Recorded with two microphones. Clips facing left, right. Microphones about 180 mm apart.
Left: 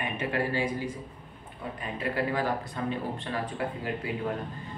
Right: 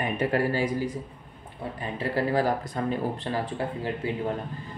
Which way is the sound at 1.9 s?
35° right (ahead or behind).